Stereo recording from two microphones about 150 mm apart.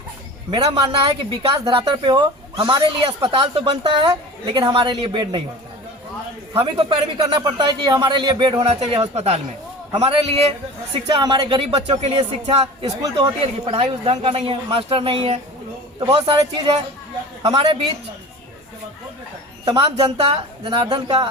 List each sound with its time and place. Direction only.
0.5 s a woman's voice: 35° right (ahead or behind)
6.5 s a woman's voice: 40° right (ahead or behind)
11.0 s a woman's voice: 30° right (ahead or behind)
19.6 s a woman's voice: 35° right (ahead or behind)